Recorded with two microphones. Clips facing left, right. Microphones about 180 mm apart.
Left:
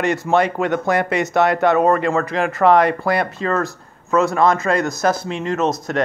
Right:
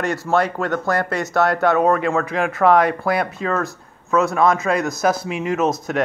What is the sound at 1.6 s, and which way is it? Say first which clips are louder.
Speech: left 1 dB; centre (ahead or behind).